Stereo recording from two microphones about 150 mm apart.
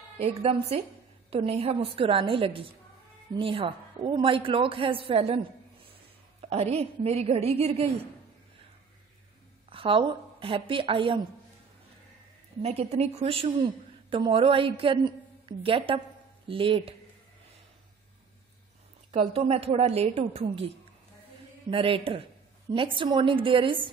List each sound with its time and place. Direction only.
0.2 s a woman's voice: 45° right (ahead or behind)
6.4 s a woman's voice: 45° right (ahead or behind)
9.7 s a woman's voice: 35° right (ahead or behind)
12.6 s a woman's voice: 45° right (ahead or behind)
19.1 s a woman's voice: 45° right (ahead or behind)